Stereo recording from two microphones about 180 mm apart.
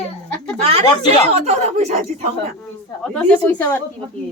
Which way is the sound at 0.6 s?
35° right (ahead or behind).